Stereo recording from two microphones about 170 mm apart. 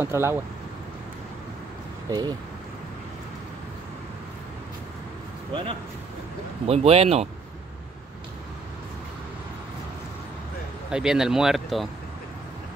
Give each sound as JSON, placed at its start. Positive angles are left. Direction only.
{"t": 0.0, "sound": "speech", "side_deg": -15}
{"t": 2.0, "sound": "speech", "side_deg": -25}
{"t": 5.5, "sound": "speech", "side_deg": -30}
{"t": 10.9, "sound": "speech", "side_deg": -5}